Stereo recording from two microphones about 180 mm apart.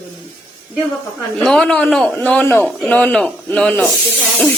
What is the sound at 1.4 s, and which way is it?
A man's voice, 5° left (ahead or behind).